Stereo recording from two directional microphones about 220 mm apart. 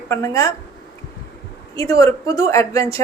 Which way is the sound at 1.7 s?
15° left (ahead or behind).